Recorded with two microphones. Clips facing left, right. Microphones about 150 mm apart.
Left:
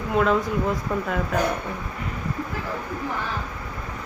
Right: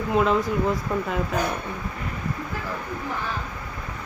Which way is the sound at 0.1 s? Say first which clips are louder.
Even; centre (ahead or behind).